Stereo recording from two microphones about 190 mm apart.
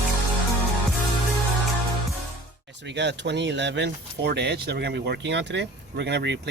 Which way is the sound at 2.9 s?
65° right (ahead or behind).